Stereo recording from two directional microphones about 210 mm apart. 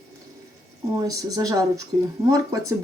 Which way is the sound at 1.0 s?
15° right (ahead or behind).